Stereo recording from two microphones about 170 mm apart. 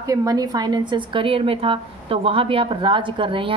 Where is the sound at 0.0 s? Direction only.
20° right (ahead or behind).